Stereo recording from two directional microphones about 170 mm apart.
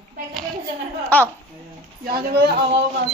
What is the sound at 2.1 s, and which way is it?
Speech, 65° right (ahead or behind).